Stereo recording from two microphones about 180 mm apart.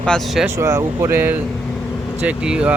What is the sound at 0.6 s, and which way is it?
Speech, 15° right (ahead or behind).